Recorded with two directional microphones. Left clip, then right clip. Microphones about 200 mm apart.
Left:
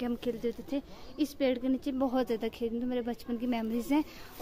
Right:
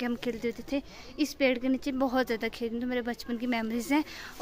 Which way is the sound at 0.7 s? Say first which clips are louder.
Right 3 dB; 25° right (ahead or behind).